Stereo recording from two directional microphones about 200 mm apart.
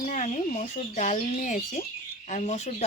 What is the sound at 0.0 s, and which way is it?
Speech, 40° left (ahead or behind).